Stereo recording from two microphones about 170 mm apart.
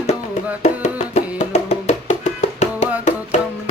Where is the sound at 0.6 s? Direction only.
40° left (ahead or behind).